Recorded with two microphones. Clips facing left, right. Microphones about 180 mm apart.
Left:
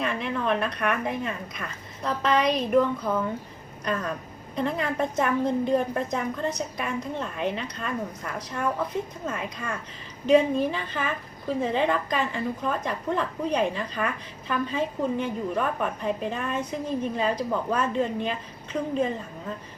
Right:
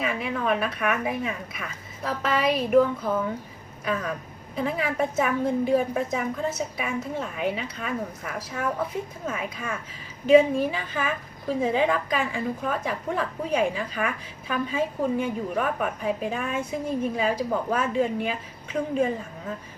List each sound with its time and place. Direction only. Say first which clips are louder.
0.0 s a woman's voice: even; 5° right (ahead or behind)
4.5 s a woman's voice: even; 5° right (ahead or behind)